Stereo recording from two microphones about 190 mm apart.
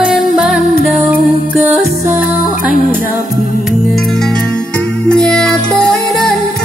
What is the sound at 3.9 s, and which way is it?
Music, centre (ahead or behind).